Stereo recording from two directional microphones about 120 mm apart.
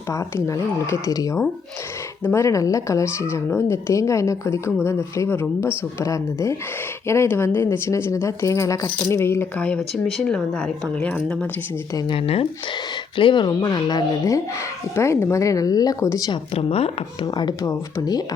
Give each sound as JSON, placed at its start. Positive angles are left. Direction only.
{"t": 0.1, "sound": "speech", "side_deg": 25}
{"t": 9.6, "sound": "speech", "side_deg": 5}
{"t": 11.9, "sound": "speech", "side_deg": 45}
{"t": 13.1, "sound": "speech", "side_deg": 40}
{"t": 16.6, "sound": "speech", "side_deg": 55}
{"t": 17.2, "sound": "speech", "side_deg": 30}